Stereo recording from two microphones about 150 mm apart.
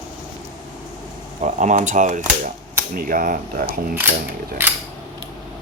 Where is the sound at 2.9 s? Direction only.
65° right (ahead or behind).